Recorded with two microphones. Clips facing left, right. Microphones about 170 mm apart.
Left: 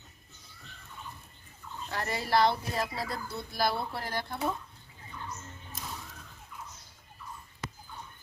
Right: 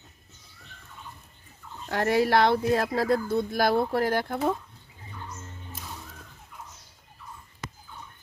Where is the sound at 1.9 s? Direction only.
65° right (ahead or behind).